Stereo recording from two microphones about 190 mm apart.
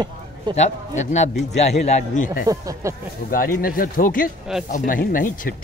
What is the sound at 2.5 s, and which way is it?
Speech, 15° right (ahead or behind).